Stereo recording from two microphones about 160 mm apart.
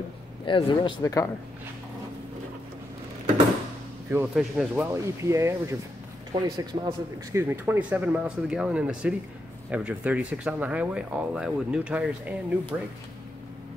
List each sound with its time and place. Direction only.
0.5 s speech: 35° left (ahead or behind)
1.0 s speech: 20° left (ahead or behind)
4.1 s speech: 5° right (ahead or behind)
4.9 s a man's voice: 20° right (ahead or behind)
7.4 s speech: 10° right (ahead or behind)